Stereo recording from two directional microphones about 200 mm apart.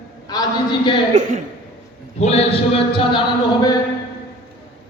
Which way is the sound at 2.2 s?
30° left (ahead or behind).